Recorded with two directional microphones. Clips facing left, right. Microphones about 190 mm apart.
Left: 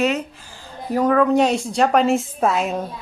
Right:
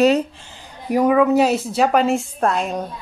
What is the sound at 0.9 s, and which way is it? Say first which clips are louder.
A woman's voice: right 2 dB; 10° right (ahead or behind).